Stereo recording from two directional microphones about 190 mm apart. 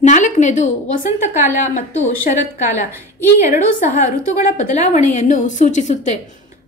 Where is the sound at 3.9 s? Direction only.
40° left (ahead or behind).